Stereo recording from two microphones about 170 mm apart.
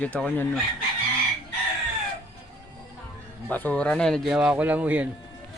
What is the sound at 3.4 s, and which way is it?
Speech, 10° left (ahead or behind).